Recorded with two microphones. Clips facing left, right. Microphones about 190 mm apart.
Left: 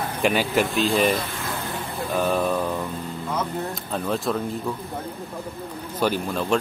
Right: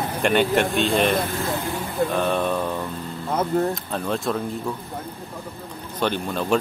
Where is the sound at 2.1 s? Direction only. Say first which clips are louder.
Left 4 dB; 5° left (ahead or behind).